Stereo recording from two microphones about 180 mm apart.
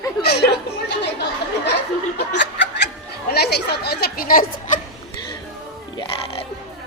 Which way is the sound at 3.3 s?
65° left (ahead or behind).